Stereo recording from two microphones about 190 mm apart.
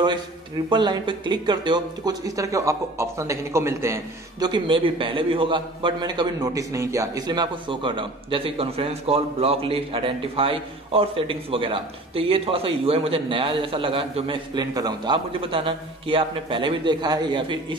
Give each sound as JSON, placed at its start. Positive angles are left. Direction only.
{"t": 0.7, "sound": "speech", "side_deg": -25}